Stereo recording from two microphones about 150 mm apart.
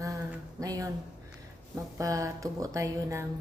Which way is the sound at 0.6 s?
25° right (ahead or behind).